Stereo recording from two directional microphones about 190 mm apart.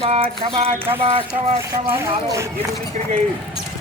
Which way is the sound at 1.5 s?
15° right (ahead or behind).